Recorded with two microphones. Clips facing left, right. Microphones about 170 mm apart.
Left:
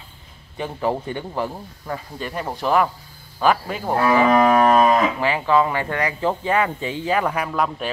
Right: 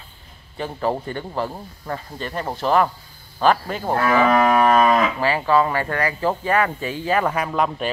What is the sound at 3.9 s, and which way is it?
Livestock, 15° left (ahead or behind).